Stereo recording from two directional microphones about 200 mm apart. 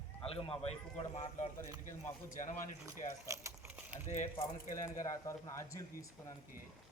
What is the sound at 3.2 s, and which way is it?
Speech, 15° right (ahead or behind).